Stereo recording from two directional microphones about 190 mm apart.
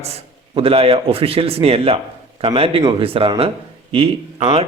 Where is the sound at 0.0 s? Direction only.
35° right (ahead or behind).